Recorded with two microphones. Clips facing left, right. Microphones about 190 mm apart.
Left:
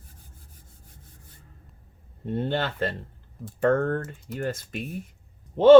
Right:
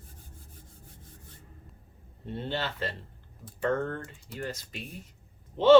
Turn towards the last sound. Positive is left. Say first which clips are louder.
# left 5 dB
turn(degrees=50)  # may be behind; listen again after turning